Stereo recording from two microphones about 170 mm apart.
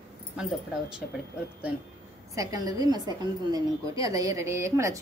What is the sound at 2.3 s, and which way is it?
A woman's voice, 20° right (ahead or behind).